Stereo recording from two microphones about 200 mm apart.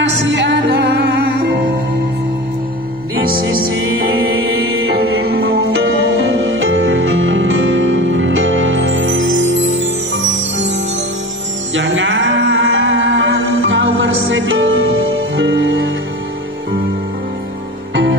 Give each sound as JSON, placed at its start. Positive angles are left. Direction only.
{"t": 0.0, "sound": "music", "side_deg": -60}
{"t": 3.3, "sound": "music", "side_deg": -50}
{"t": 4.4, "sound": "music", "side_deg": -90}
{"t": 4.8, "sound": "music", "side_deg": -55}
{"t": 5.4, "sound": "music", "side_deg": -85}
{"t": 11.7, "sound": "music", "side_deg": -70}